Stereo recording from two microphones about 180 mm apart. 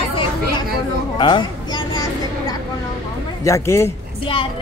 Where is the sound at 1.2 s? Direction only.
25° left (ahead or behind).